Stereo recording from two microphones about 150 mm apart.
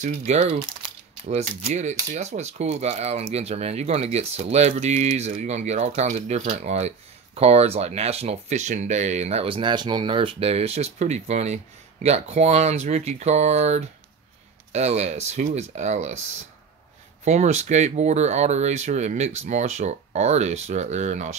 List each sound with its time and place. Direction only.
0.0 s speech: 45° right (ahead or behind)